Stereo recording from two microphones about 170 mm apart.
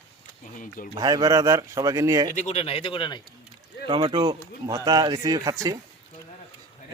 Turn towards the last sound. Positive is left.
turn(degrees=-20)  # may be behind; listen again after turning